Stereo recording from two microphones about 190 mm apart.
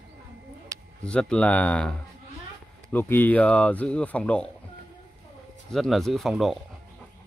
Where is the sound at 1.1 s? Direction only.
5° left (ahead or behind).